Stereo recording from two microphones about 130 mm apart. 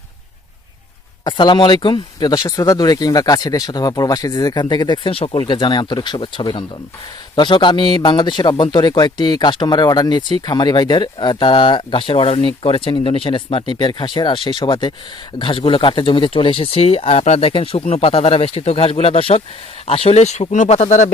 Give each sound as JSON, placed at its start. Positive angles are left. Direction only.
{"t": 1.2, "sound": "speech", "side_deg": 35}
{"t": 5.1, "sound": "speech", "side_deg": 45}